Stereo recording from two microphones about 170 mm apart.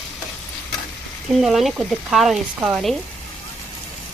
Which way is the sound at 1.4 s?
Centre (ahead or behind).